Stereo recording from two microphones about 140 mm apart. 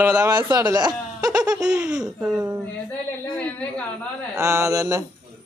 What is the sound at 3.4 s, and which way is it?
Speech, 10° left (ahead or behind).